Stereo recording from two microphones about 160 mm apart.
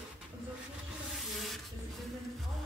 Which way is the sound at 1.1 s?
Centre (ahead or behind).